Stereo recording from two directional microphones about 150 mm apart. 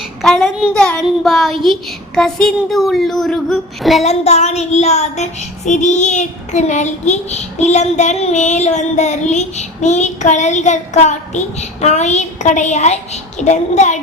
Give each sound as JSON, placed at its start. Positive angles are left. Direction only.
{"t": 0.2, "sound": "child singing", "side_deg": 0}
{"t": 0.7, "sound": "a child's voice", "side_deg": 5}
{"t": 1.0, "sound": "child singing", "side_deg": 0}
{"t": 4.0, "sound": "child singing", "side_deg": 45}